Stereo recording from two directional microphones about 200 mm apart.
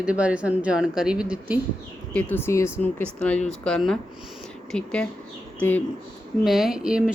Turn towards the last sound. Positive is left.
turn(degrees=-5)  # may be behind; listen again after turning